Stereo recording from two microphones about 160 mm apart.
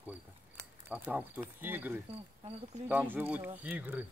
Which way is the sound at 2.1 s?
35° right (ahead or behind).